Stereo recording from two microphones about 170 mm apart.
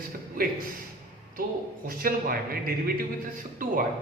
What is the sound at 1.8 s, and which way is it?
A man's voice, 60° right (ahead or behind).